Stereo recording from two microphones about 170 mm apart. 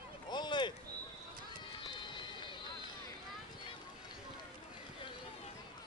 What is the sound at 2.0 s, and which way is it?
Run, 25° left (ahead or behind).